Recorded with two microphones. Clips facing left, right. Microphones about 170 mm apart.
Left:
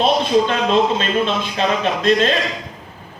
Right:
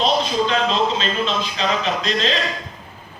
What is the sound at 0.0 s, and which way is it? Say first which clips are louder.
A man's voice: left 4 dB; 55° left (ahead or behind).